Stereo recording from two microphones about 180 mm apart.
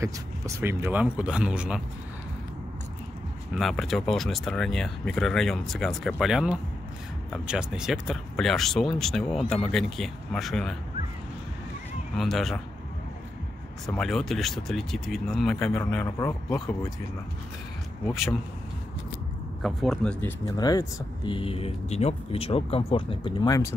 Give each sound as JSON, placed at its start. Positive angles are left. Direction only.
{"t": 0.0, "sound": "speech", "side_deg": -15}
{"t": 3.5, "sound": "speech", "side_deg": 0}
{"t": 12.2, "sound": "speech", "side_deg": 0}
{"t": 13.8, "sound": "speech", "side_deg": 0}
{"t": 18.0, "sound": "speech", "side_deg": 0}
{"t": 19.6, "sound": "speech", "side_deg": 0}
{"t": 20.5, "sound": "speech", "side_deg": 20}